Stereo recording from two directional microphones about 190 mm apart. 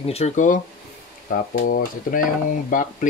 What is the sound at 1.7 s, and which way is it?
Speech, 45° left (ahead or behind).